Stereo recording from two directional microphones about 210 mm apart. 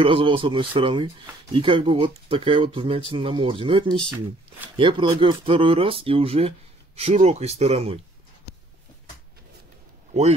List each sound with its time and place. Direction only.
0.0 s speech: 25° right (ahead or behind)